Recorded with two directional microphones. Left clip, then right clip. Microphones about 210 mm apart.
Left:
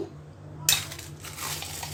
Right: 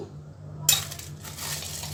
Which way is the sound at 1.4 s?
Centre (ahead or behind).